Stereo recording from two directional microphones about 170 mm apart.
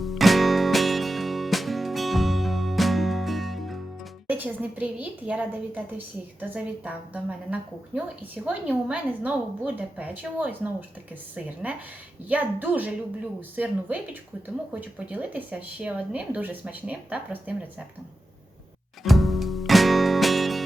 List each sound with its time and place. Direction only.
0.0 s music: centre (ahead or behind)
4.3 s speech: 10° right (ahead or behind)
19.0 s music: centre (ahead or behind)